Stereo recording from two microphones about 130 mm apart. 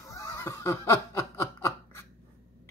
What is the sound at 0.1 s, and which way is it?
Snicker, 20° left (ahead or behind).